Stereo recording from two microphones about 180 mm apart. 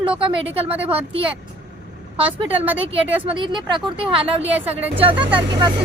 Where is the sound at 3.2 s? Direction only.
25° right (ahead or behind).